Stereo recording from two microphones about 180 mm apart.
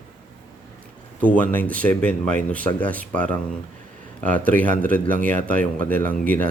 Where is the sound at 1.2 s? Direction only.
10° left (ahead or behind).